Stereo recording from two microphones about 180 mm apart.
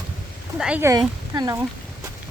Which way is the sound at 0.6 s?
10° right (ahead or behind).